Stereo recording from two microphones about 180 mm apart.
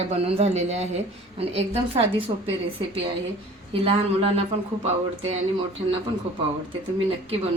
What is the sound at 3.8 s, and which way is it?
A man's voice, 35° right (ahead or behind).